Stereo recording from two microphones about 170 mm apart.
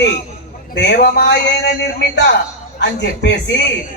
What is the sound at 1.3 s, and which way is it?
Speech, 80° left.